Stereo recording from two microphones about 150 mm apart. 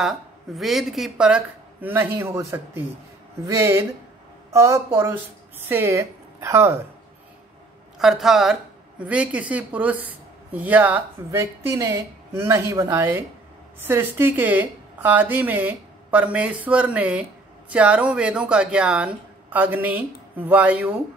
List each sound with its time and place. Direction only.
0.0 s a woman's voice: centre (ahead or behind); by 6.8 s 20° right (ahead or behind)
8.0 s a woman's voice: centre (ahead or behind)